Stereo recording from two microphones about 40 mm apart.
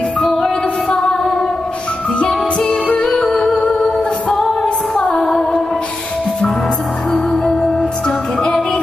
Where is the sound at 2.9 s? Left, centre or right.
Centre.